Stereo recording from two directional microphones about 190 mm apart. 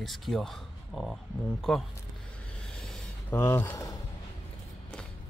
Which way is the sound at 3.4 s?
15° left (ahead or behind).